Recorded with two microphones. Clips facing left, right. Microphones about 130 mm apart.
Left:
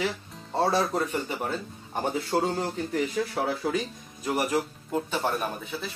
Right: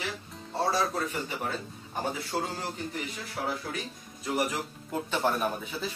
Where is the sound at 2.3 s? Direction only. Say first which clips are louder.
Left 7 dB; 55° left (ahead or behind).